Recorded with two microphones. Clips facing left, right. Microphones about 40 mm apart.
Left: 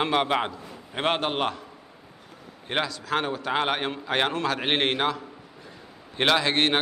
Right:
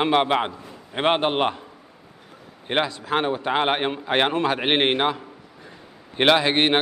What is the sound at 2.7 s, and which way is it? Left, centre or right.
A man's voice, right.